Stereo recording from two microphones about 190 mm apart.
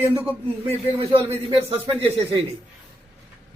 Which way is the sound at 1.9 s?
30° right (ahead or behind).